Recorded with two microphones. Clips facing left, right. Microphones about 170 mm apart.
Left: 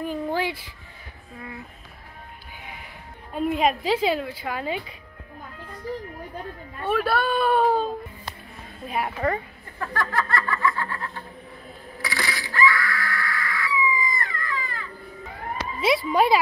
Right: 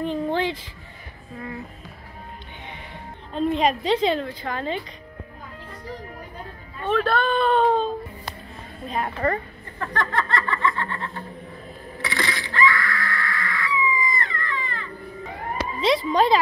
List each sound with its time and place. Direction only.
0.0 s a sound: 10° left (ahead or behind)
3.3 s a woman's voice: 10° left (ahead or behind)
6.8 s a woman's voice: 10° left (ahead or behind)
10.5 s snicker: 20° right (ahead or behind)
10.8 s a woman's voice: 5° left (ahead or behind)
12.0 s screaming: 5° left (ahead or behind)
16.1 s a woman's voice: 10° left (ahead or behind)